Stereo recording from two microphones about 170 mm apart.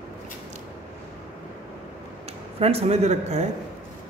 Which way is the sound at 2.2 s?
35° right (ahead or behind).